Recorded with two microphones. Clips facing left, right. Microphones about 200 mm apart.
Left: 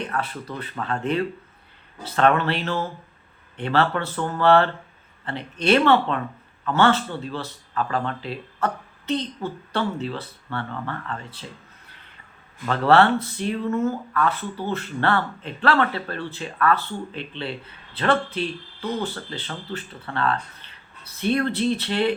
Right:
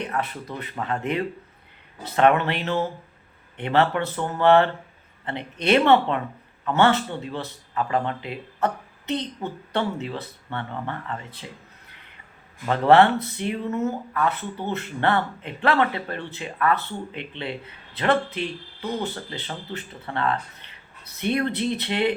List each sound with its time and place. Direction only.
0.0 s speech: 20° right (ahead or behind)
12.6 s speech: 20° right (ahead or behind)